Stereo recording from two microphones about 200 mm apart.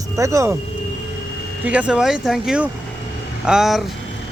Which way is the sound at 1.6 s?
5° right (ahead or behind).